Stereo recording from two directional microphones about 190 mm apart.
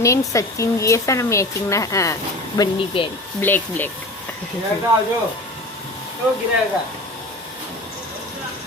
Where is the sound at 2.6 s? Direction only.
25° left (ahead or behind).